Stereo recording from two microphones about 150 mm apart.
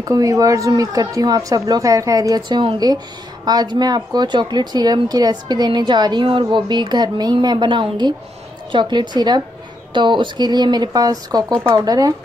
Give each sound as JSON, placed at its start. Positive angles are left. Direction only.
{"t": 0.0, "sound": "speech", "side_deg": -25}